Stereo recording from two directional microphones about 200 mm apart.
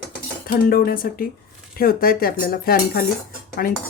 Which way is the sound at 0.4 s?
45° left (ahead or behind).